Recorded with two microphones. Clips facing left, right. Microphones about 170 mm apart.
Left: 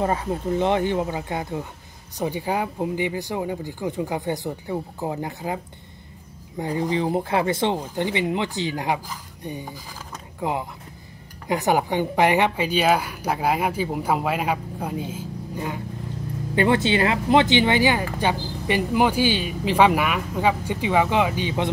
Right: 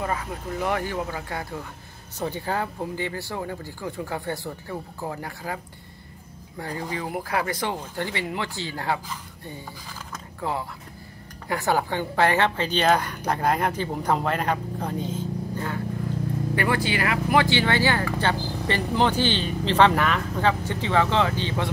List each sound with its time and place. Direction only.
0.0 s speech: 30° left (ahead or behind)
6.6 s speech: 20° left (ahead or behind)